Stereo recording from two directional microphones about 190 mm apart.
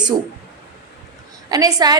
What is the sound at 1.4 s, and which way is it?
Speech, 20° right (ahead or behind).